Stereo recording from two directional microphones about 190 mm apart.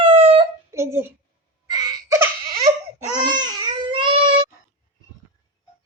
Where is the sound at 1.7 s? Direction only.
20° right (ahead or behind).